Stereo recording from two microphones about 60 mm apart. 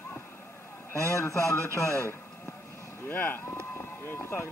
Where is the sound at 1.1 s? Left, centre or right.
Left.